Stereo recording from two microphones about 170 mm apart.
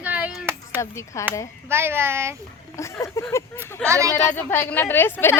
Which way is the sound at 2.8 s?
15° left (ahead or behind).